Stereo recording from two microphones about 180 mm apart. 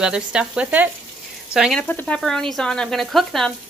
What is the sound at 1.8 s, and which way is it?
Speech, 10° left (ahead or behind).